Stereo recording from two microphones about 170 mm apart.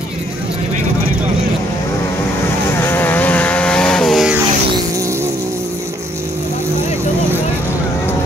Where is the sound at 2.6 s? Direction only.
15° left (ahead or behind).